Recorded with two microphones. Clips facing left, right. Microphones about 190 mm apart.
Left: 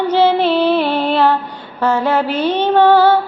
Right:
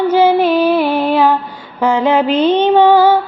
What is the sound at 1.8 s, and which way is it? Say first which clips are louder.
Music: right 3 dB; 15° right (ahead or behind).